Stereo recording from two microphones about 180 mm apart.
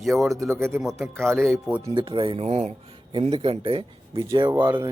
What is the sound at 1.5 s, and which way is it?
Speech, centre (ahead or behind).